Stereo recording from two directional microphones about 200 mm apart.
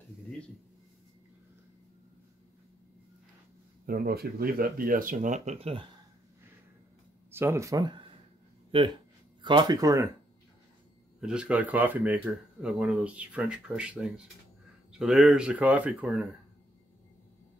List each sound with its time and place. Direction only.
3.8 s speech: 50° right (ahead or behind); by 5.9 s 30° right (ahead or behind)
7.2 s speech: 10° right (ahead or behind)
11.1 s speech: 5° right (ahead or behind)